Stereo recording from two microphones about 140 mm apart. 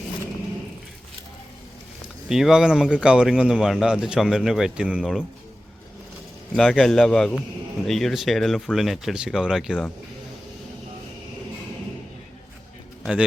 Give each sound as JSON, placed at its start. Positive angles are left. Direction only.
{"t": 2.3, "sound": "speech", "side_deg": -5}
{"t": 6.6, "sound": "speech", "side_deg": 0}
{"t": 13.0, "sound": "a man's voice", "side_deg": -5}